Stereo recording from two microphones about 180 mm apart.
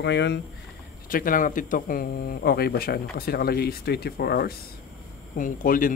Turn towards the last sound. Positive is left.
turn(degrees=50)  # may be behind; listen again after turning